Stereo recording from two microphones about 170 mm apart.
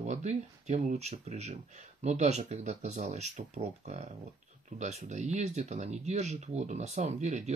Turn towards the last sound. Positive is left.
turn(degrees=-40)  # may be behind; listen again after turning